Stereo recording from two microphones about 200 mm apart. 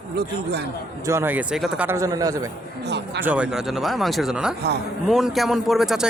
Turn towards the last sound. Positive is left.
turn(degrees=0)  # may be behind; listen again after turning